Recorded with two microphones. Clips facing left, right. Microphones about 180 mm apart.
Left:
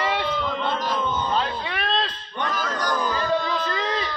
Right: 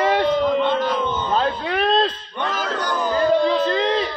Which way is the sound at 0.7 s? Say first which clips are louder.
Right 4 dB; centre (ahead or behind).